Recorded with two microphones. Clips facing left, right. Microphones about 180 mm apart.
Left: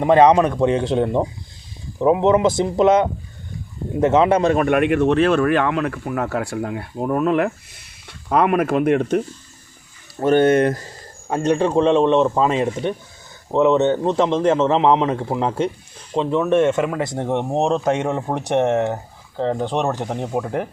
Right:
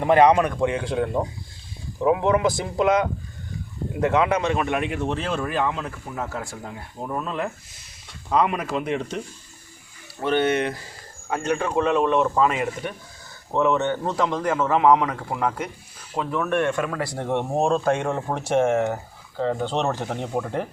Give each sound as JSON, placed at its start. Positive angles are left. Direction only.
{"t": 0.0, "sound": "a man's voice", "side_deg": 20}
{"t": 4.6, "sound": "speech", "side_deg": 60}
{"t": 10.2, "sound": "speech", "side_deg": 45}
{"t": 11.3, "sound": "speech", "side_deg": 35}